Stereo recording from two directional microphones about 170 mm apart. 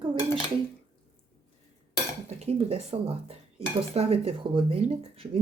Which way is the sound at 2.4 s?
40° right (ahead or behind).